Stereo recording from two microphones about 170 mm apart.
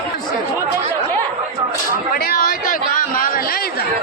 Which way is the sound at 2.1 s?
60° left (ahead or behind).